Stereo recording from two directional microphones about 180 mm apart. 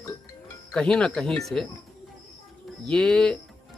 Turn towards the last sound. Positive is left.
turn(degrees=5)  # may be behind; listen again after turning